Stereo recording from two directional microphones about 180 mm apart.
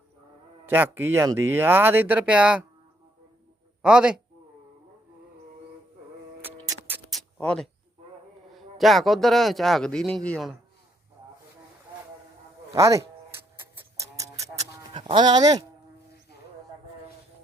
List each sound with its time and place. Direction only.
0.7 s speech: 10° right (ahead or behind)
3.8 s speech: 5° right (ahead or behind)
6.4 s music: 10° right (ahead or behind)
7.1 s a sound: 5° left (ahead or behind)
8.5 s speech: centre (ahead or behind)
12.7 s a sound: 15° right (ahead or behind)
15.0 s speech: 25° right (ahead or behind)